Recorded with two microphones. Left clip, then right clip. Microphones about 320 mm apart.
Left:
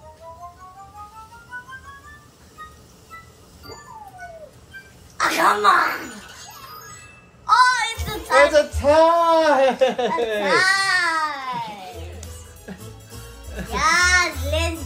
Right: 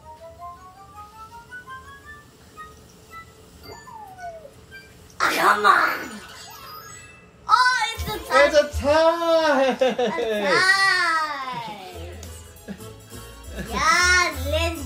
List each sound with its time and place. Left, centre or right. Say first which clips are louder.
5.1 s speech: left 1 dB; left
7.4 s child singing: left 2 dB; left
12.7 s music: even; left
13.6 s child singing: left 1 dB; left